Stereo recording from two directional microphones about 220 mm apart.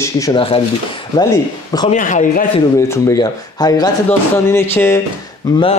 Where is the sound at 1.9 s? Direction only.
35° left (ahead or behind).